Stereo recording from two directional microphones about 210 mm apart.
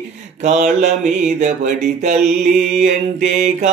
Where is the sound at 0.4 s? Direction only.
35° right (ahead or behind).